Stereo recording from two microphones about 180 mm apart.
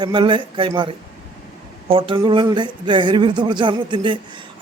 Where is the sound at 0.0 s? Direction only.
25° right (ahead or behind).